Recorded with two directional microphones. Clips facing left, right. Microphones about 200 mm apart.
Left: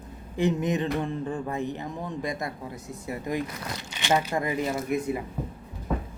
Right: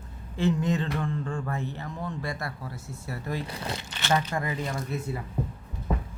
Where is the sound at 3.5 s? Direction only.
30° right (ahead or behind).